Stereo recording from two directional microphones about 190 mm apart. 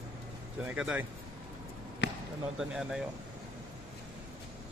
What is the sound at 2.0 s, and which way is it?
Basketball bounce, 65° left (ahead or behind).